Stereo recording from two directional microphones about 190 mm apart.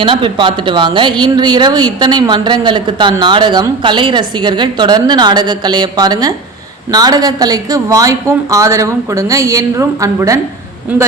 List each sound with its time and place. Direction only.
0.0 s a woman's voice: 25° right (ahead or behind)